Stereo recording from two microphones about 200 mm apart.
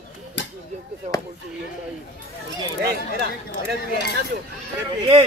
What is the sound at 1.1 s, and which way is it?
Chop, 40° right (ahead or behind).